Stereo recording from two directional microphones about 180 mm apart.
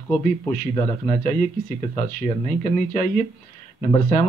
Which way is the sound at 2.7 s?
45° left (ahead or behind).